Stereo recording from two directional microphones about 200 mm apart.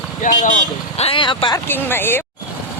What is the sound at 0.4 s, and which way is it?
Speech, 35° left (ahead or behind).